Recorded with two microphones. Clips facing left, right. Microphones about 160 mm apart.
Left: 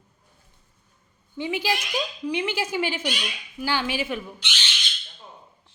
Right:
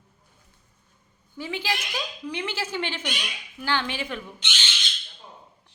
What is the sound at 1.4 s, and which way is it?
Speech, 15° left (ahead or behind).